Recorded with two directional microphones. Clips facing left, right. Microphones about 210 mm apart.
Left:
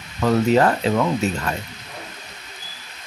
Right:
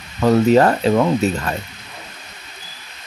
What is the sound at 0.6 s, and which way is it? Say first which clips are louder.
Speech: right 4 dB; 35° right (ahead or behind).